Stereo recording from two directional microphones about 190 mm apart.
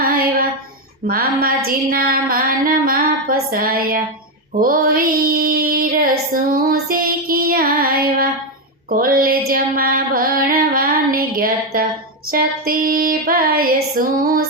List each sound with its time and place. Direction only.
0.0 s a sound: 50° right (ahead or behind)
1.0 s music: 50° right (ahead or behind)
4.5 s child singing: 50° right (ahead or behind)
8.9 s music: 50° right (ahead or behind)
9.5 s female singing: 50° right (ahead or behind)
12.3 s music: 50° right (ahead or behind)